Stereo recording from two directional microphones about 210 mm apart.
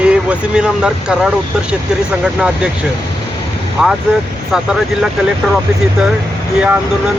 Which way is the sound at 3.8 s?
5° right (ahead or behind).